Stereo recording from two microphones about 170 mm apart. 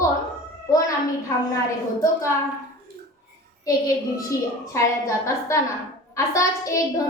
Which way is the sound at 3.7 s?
20° left (ahead or behind).